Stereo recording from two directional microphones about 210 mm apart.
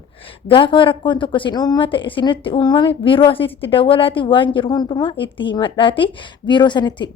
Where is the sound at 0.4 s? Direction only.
25° left (ahead or behind).